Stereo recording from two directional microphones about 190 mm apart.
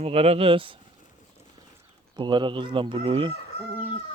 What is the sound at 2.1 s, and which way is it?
Speech, 25° right (ahead or behind).